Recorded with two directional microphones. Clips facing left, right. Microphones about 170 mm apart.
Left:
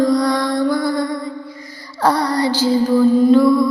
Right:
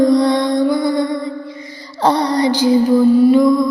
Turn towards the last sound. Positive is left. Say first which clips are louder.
# right 1 dB
turn(degrees=-15)  # may be behind; listen again after turning